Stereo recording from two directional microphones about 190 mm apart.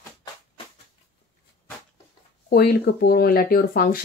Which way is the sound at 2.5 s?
55° left (ahead or behind).